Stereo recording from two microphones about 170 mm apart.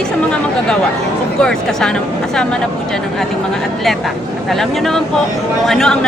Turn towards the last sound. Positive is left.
turn(degrees=0)  # may be behind; listen again after turning